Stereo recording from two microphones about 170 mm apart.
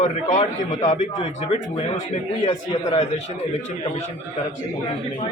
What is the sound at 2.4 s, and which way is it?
Speech, 25° left (ahead or behind).